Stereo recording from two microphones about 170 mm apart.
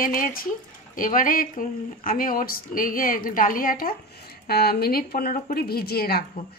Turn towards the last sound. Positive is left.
turn(degrees=65)  # may be behind; listen again after turning